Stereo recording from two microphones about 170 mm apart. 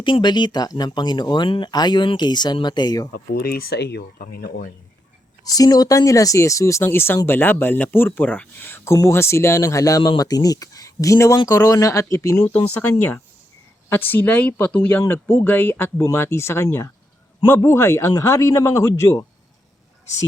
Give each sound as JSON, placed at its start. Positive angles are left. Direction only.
{"t": 0.0, "sound": "speech", "side_deg": 25}
{"t": 3.1, "sound": "speech", "side_deg": 65}
{"t": 5.5, "sound": "speech", "side_deg": 20}